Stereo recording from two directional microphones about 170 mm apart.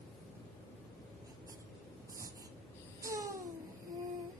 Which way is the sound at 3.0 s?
20° right (ahead or behind).